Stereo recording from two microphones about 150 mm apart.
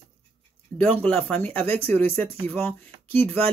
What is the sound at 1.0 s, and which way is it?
Speech, 5° left (ahead or behind).